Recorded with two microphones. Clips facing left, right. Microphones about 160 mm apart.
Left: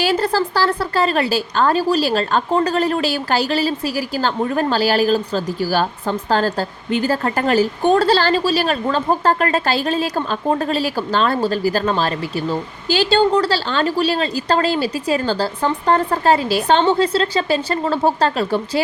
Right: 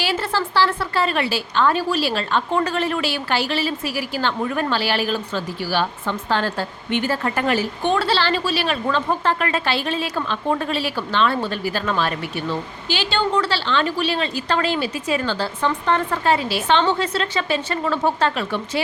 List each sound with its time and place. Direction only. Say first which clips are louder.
0.0 s a woman's voice: left 5 dB; 40° left (ahead or behind)